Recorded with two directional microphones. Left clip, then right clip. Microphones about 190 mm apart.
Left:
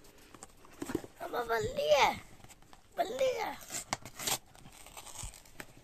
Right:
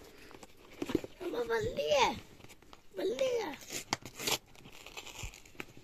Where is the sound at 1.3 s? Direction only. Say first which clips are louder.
Left 1 dB; 45° left (ahead or behind).